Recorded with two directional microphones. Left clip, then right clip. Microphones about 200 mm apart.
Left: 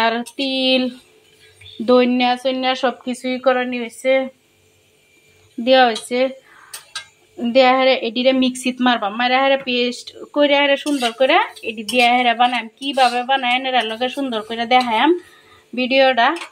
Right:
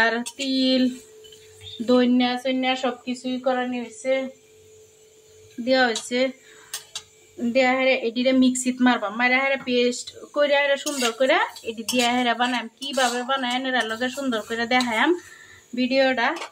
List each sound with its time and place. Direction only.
0.0 s a woman's voice: 10° left (ahead or behind)
1.9 s speech: 10° left (ahead or behind)
3.3 s a woman's voice: 35° left (ahead or behind)
5.7 s a woman's voice: 10° left (ahead or behind)
7.4 s a woman's voice: 20° left (ahead or behind)